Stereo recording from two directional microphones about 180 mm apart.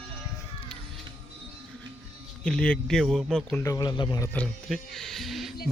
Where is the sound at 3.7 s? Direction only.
20° left (ahead or behind).